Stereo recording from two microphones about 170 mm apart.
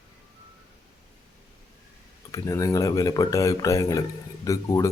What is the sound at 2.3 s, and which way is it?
Speech, 20° left (ahead or behind).